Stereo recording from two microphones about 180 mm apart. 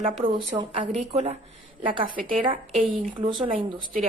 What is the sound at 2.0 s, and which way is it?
Speech, 50° right (ahead or behind).